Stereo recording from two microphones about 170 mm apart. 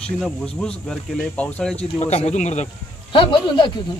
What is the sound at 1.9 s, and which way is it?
Speech, 40° left (ahead or behind).